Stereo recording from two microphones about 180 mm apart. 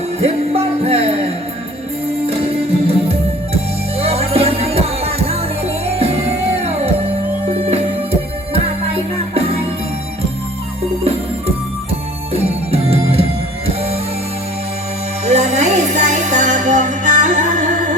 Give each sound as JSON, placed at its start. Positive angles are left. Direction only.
{"t": 0.2, "sound": "music", "side_deg": -35}
{"t": 7.7, "sound": "music", "side_deg": -35}
{"t": 12.3, "sound": "music", "side_deg": -35}
{"t": 15.2, "sound": "music", "side_deg": -40}